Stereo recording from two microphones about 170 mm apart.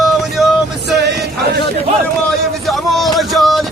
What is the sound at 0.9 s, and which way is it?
Music, 70° right (ahead or behind).